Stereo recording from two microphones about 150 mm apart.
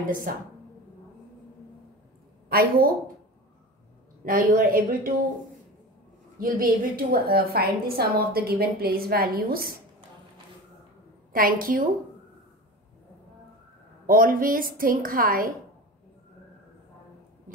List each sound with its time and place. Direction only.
0.0 s a woman's voice: 70° right (ahead or behind)
2.5 s a woman's voice: 80° right
4.2 s a woman's voice: 65° right (ahead or behind)
6.4 s a woman's voice: 70° right (ahead or behind)
11.3 s a woman's voice: 70° right (ahead or behind)
14.0 s a woman's voice: 65° right (ahead or behind)